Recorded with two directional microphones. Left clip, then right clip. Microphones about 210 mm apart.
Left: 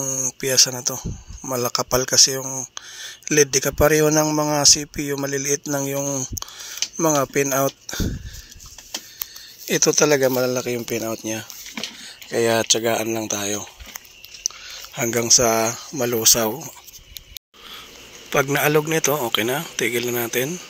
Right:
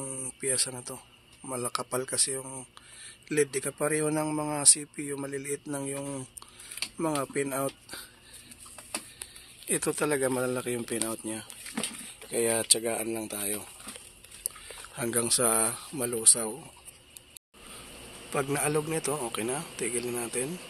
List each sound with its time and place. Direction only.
0.0 s speech: 25° left (ahead or behind)
7.2 s speech: 35° left (ahead or behind)
9.7 s speech: 30° left (ahead or behind)
15.0 s speech: 25° left (ahead or behind)
16.0 s speech: 35° left (ahead or behind)
18.3 s speech: 30° left (ahead or behind)